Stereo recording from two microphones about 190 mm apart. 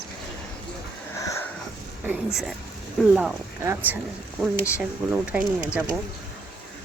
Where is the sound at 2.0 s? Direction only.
Centre (ahead or behind).